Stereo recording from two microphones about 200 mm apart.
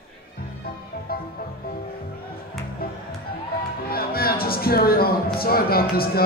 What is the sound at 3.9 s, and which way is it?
A man's voice, 50° left (ahead or behind).